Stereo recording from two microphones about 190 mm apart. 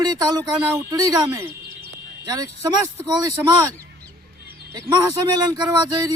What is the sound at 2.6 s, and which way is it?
Speech, 20° right (ahead or behind).